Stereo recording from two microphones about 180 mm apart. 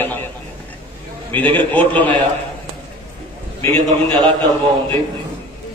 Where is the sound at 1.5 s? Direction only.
10° left (ahead or behind).